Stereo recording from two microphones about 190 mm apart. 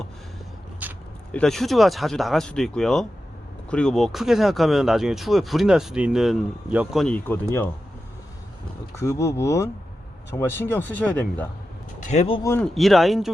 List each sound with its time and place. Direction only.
0.8 s a sound: 10° right (ahead or behind)
1.3 s speech: 5° left (ahead or behind)
9.0 s speech: 15° left (ahead or behind)
12.0 s speech: 35° left (ahead or behind)
12.4 s speech: 15° left (ahead or behind)
12.6 s speech: centre (ahead or behind)